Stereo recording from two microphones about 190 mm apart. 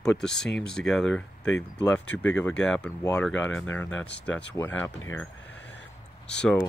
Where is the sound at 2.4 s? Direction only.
5° left (ahead or behind).